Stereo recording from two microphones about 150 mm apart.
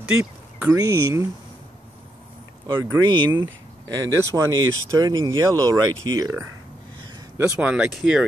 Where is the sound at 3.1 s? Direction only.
30° right (ahead or behind).